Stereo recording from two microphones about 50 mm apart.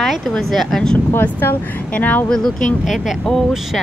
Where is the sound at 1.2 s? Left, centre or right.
Left.